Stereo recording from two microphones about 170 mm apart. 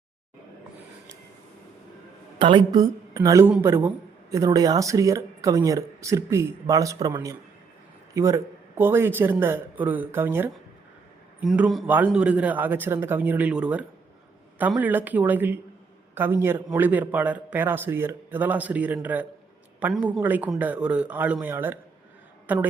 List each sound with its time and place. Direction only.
2.4 s a man's voice: 30° right (ahead or behind); by 22.6 s 10° right (ahead or behind)